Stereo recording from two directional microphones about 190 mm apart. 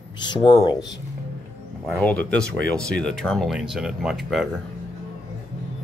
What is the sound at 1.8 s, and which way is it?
Speech, 5° left (ahead or behind).